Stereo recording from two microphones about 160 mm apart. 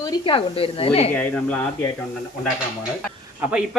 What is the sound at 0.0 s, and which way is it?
Speech, 30° left (ahead or behind).